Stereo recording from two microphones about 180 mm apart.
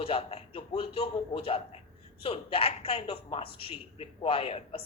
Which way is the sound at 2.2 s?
30° left (ahead or behind).